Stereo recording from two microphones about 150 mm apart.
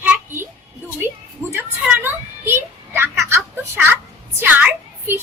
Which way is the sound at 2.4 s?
15° right (ahead or behind).